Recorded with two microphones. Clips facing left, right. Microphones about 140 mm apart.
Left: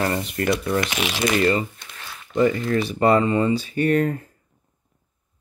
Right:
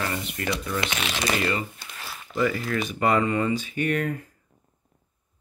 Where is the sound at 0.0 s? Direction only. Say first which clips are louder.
Left 7 dB; 40° left (ahead or behind).